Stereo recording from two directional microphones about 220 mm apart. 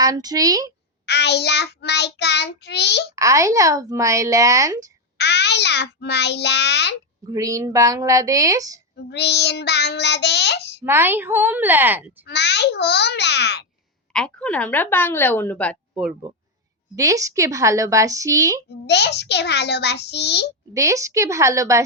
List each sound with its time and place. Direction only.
0.0 s a woman's voice: 15° right (ahead or behind)
1.0 s child singing: 50° left (ahead or behind)
3.2 s a woman's voice: 15° right (ahead or behind)
5.1 s child singing: 50° left (ahead or behind)
7.3 s a woman's voice: 15° right (ahead or behind)
9.0 s child singing: 50° left (ahead or behind)
10.8 s a woman's voice: 10° right (ahead or behind)
12.2 s child singing: 50° left (ahead or behind)
14.1 s a woman's voice: 5° left (ahead or behind)
16.9 s a woman's voice: 15° right (ahead or behind)
18.9 s child singing: 50° left (ahead or behind)
20.7 s a woman's voice: 15° right (ahead or behind)